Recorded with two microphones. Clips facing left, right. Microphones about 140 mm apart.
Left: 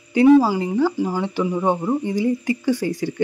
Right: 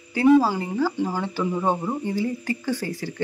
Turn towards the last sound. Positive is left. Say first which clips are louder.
# left 6 dB
turn(degrees=15)  # may be behind; listen again after turning